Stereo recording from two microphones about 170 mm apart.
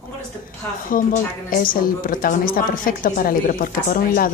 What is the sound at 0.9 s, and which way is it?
A woman's voice, 55° left (ahead or behind).